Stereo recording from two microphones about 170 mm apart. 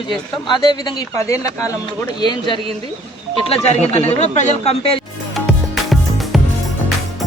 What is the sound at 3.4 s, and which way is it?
Speech, 40° left (ahead or behind).